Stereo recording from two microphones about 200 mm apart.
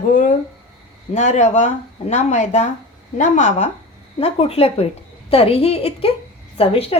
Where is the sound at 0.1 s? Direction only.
40° left (ahead or behind).